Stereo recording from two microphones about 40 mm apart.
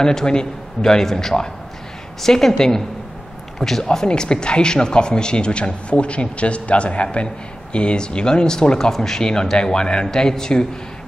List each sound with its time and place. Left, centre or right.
0.0 s a man's voice: centre